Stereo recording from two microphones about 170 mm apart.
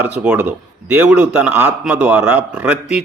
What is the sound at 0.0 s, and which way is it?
A man's voice, 10° right (ahead or behind).